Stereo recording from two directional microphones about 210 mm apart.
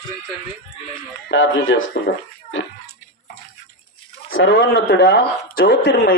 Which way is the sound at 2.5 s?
65° left (ahead or behind).